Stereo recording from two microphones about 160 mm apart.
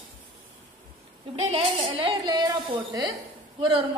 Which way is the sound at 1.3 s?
40° right (ahead or behind).